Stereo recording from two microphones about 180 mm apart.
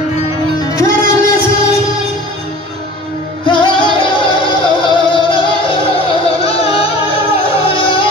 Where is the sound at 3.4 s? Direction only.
30° left (ahead or behind).